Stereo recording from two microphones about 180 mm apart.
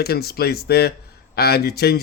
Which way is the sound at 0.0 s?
60° left (ahead or behind).